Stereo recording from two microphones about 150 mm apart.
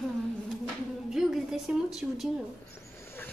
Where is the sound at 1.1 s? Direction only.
Centre (ahead or behind).